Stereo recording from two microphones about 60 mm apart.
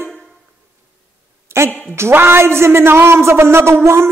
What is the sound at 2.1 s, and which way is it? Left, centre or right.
A man's voice, right.